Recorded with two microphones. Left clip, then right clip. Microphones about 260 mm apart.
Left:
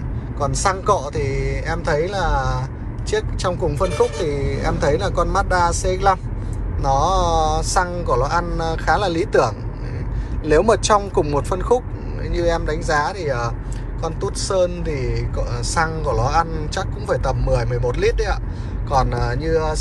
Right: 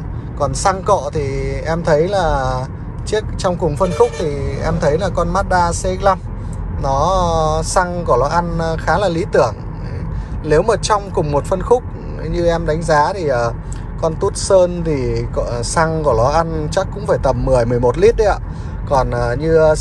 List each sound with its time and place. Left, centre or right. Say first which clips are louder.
0.4 s speech: right 4 dB; centre